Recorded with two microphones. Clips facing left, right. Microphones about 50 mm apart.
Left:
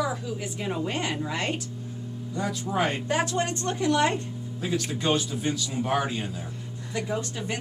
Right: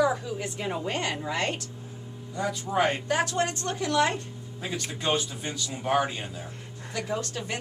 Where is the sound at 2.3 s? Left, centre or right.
Centre.